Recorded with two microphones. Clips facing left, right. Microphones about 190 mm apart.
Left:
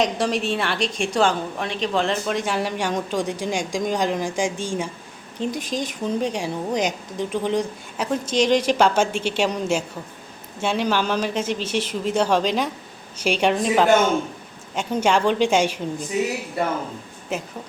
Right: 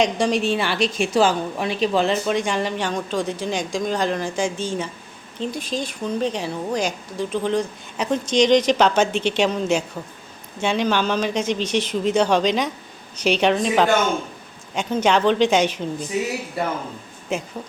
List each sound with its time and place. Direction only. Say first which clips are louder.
0.0 s a woman's voice: right 2 dB; centre (ahead or behind)
17.3 s a woman's voice: right 2 dB; 5° left (ahead or behind)